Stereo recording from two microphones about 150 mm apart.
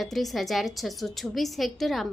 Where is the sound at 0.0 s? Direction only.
Centre (ahead or behind).